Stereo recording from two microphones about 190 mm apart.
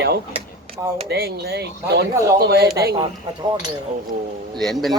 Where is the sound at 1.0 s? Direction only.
55° right (ahead or behind).